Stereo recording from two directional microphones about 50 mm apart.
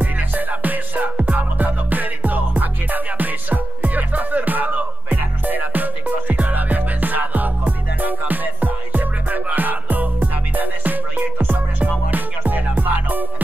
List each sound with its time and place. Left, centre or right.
0.0 s music: right